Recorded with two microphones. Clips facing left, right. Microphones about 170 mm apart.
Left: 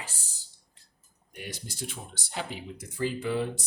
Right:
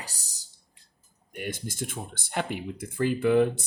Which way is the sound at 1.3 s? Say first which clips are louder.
Right 6 dB; 55° right (ahead or behind).